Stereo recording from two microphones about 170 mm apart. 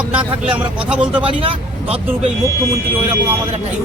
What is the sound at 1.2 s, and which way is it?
Speech, 35° right (ahead or behind).